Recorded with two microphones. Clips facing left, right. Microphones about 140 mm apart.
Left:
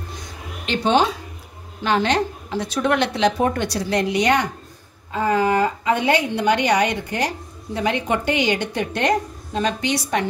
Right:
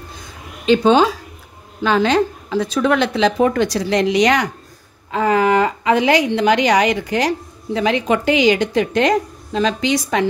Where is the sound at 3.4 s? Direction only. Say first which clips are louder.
Right 5 dB; 90° right.